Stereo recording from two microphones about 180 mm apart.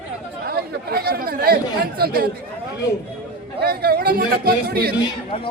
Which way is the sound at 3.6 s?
60° right (ahead or behind).